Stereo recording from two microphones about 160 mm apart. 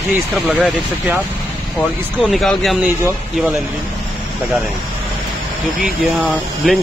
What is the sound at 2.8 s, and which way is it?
Speech, 10° right (ahead or behind).